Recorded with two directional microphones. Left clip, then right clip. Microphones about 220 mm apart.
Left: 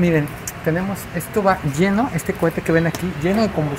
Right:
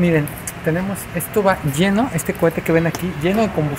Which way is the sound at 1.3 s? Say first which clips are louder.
Right 1 dB; 30° right (ahead or behind).